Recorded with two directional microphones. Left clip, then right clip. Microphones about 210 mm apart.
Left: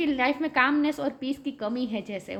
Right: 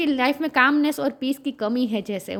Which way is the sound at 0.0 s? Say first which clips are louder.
Right 4 dB; 50° right (ahead or behind).